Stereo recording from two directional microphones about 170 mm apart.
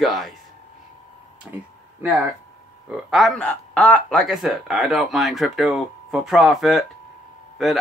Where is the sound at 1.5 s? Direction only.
10° right (ahead or behind).